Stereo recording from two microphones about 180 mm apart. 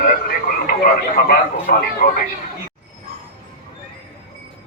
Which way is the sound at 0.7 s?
55° left (ahead or behind).